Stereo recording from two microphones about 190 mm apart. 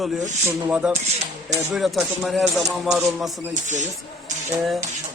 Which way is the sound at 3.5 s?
40° right (ahead or behind).